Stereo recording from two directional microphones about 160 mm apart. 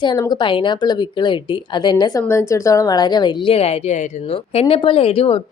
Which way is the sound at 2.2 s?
15° left (ahead or behind).